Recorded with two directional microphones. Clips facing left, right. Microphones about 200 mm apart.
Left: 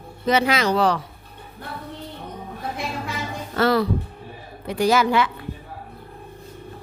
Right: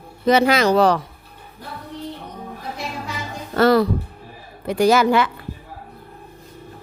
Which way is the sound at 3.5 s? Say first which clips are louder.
Right 4 dB; 45° right (ahead or behind).